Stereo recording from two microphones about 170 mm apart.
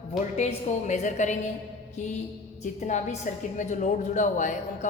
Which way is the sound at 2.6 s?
45° left (ahead or behind).